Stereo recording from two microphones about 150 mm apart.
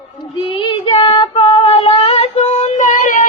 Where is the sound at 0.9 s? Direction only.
35° left (ahead or behind).